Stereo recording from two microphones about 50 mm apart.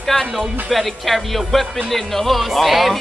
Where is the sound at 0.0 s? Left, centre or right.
Centre.